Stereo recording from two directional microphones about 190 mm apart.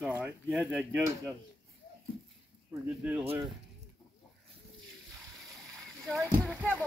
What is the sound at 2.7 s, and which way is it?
Speech, 10° right (ahead or behind).